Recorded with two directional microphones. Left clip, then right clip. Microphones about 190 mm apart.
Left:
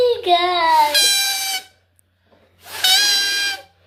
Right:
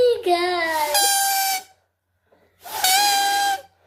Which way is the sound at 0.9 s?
50° right (ahead or behind).